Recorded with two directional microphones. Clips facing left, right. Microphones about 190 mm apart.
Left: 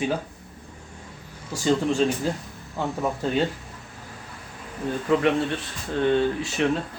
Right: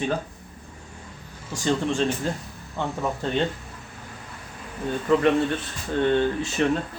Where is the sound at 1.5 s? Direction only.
5° left (ahead or behind).